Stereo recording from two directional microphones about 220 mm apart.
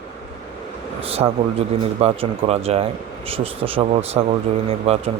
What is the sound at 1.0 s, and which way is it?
Speech, 25° right (ahead or behind).